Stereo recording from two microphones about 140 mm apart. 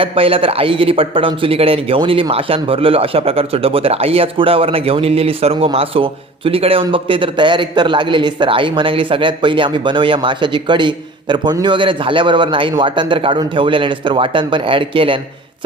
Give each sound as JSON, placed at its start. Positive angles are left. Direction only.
{"t": 0.0, "sound": "speech", "side_deg": -40}